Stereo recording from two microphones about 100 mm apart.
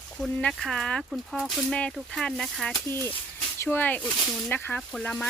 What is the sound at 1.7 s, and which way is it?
Speech, 10° left (ahead or behind).